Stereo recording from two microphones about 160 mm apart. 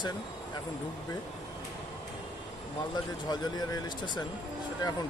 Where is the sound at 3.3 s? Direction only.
25° left (ahead or behind).